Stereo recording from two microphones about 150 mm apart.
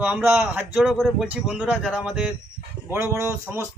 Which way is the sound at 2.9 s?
20° right (ahead or behind).